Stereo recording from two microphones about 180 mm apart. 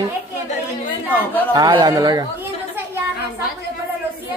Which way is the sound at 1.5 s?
25° right (ahead or behind).